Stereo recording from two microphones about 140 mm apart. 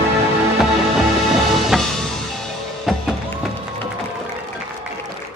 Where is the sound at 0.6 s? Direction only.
Centre (ahead or behind).